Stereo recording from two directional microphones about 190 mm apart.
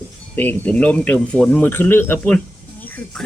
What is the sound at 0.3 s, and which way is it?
Speech, 10° left (ahead or behind).